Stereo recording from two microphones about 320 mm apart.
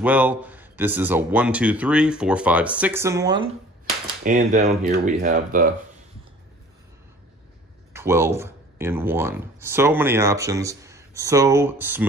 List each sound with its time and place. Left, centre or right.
0.0 s speech: centre
4.2 s speech: right
7.9 s speech: centre